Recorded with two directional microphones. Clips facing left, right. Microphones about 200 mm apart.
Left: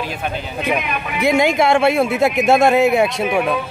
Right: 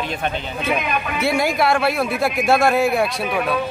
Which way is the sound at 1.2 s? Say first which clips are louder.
Left 5 dB; 20° left (ahead or behind).